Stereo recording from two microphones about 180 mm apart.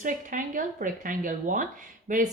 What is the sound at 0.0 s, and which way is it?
Speech, 45° right (ahead or behind).